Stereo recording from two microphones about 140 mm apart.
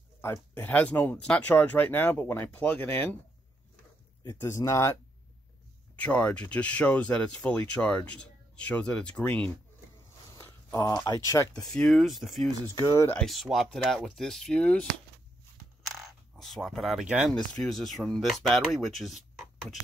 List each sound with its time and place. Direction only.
0.2 s speech: 15° left (ahead or behind)
4.4 s speech: 20° left (ahead or behind)
5.9 s speech: 10° left (ahead or behind)
10.3 s a sound: 25° left (ahead or behind)
11.1 s speech: 25° left (ahead or behind)
11.6 s speech: 5° left (ahead or behind)
12.7 s speech: 25° left (ahead or behind)
13.1 s speech: centre (ahead or behind)
15.8 s single-lens reflex camera: centre (ahead or behind)
17.6 s speech: centre (ahead or behind)